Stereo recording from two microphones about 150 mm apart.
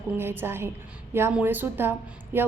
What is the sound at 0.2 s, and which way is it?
A woman's voice, 15° right (ahead or behind).